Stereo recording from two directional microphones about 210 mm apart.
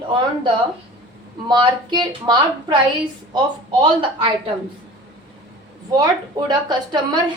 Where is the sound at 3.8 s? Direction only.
25° right (ahead or behind).